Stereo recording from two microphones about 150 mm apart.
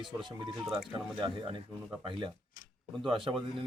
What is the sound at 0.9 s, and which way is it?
Speech, 35° right (ahead or behind).